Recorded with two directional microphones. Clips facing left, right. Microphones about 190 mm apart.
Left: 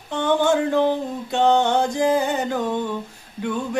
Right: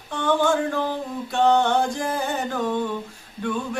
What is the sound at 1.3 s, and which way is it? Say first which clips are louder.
Music: left 1 dB; 20° left (ahead or behind).